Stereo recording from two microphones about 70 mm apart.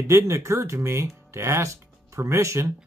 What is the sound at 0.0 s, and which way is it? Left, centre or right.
Speech, right.